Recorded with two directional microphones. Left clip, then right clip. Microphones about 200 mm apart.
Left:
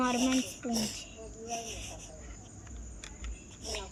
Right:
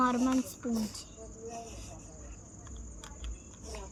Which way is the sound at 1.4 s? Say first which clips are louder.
Left 5 dB; 45° left (ahead or behind).